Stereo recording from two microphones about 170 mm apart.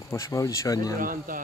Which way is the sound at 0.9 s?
55° right (ahead or behind).